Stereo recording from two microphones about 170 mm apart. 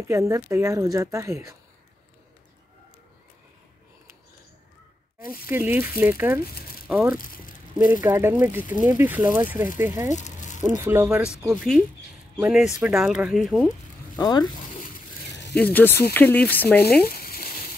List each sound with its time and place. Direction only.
0.1 s speech: 20° right (ahead or behind)
5.5 s speech: 15° right (ahead or behind)
10.1 s a sound: 45° left (ahead or behind)
10.8 s speech: 15° right (ahead or behind)
12.4 s speech: centre (ahead or behind)
13.7 s zipper: 25° left (ahead or behind)
15.5 s speech: 10° left (ahead or behind)
17.1 s frying: 60° left (ahead or behind)